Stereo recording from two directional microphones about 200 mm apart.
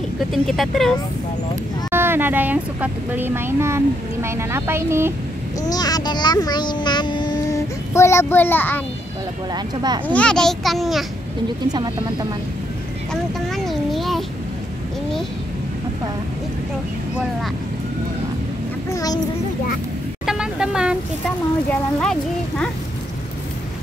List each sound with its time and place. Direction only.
0.3 s a child's voice: centre (ahead or behind)
1.9 s speech: 10° right (ahead or behind)
5.6 s a child's voice: 20° left (ahead or behind)
9.5 s speech: 20° right (ahead or behind)
10.0 s a child's voice: 5° left (ahead or behind)
11.7 s speech: 20° right (ahead or behind)
13.1 s vehicle: centre (ahead or behind)
18.9 s child singing: 15° left (ahead or behind)
20.2 s vehicle: 5° right (ahead or behind)
22.0 s a sound: 5° left (ahead or behind)